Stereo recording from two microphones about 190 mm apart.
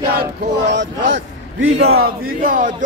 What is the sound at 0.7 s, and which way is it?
Speech, 75° right (ahead or behind).